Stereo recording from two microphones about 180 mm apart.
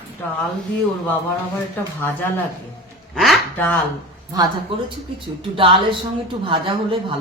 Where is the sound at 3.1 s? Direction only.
Centre (ahead or behind).